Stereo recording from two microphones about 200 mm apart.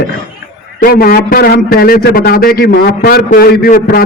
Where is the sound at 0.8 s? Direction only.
50° left (ahead or behind).